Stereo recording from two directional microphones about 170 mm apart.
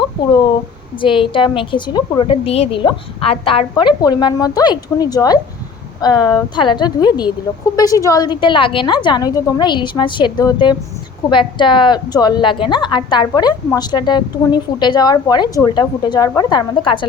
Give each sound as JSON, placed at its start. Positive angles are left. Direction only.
{"t": 1.0, "sound": "a woman's voice", "side_deg": 30}